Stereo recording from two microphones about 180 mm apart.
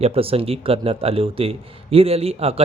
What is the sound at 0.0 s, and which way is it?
A man's voice, 30° right (ahead or behind).